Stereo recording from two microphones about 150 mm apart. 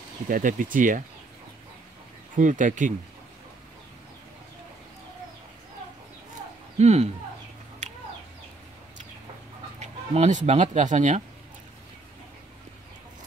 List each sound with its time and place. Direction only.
0.3 s speech: 60° right (ahead or behind)
2.3 s speech: 60° right (ahead or behind)
6.8 s speech: 45° right (ahead or behind)
7.8 s chicken: 55° right (ahead or behind)
9.8 s speech: 50° right (ahead or behind)